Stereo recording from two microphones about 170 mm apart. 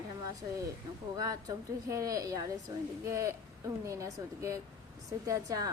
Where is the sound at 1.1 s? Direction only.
20° right (ahead or behind).